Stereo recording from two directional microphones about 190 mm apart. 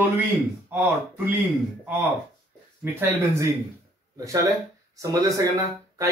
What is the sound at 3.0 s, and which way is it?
A man's voice, 10° right (ahead or behind).